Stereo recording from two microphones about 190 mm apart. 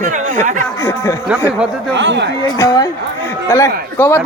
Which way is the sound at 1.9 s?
70° right (ahead or behind).